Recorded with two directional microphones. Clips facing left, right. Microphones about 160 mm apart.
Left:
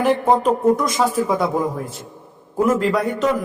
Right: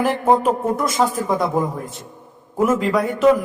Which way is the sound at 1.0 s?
15° right (ahead or behind).